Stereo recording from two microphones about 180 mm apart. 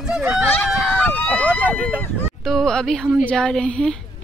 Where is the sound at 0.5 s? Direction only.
10° left (ahead or behind).